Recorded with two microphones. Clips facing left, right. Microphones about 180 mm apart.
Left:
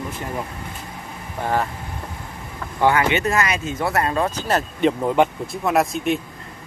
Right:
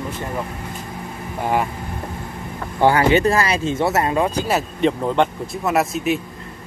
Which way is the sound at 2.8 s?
30° right (ahead or behind).